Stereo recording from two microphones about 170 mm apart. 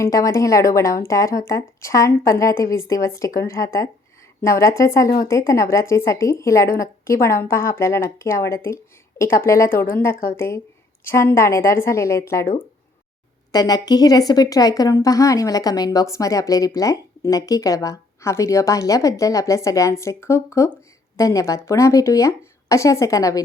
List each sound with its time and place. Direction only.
0.0 s speech: 20° left (ahead or behind)